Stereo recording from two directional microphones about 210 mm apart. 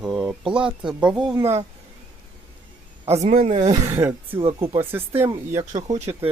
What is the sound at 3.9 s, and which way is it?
Speech, 10° right (ahead or behind).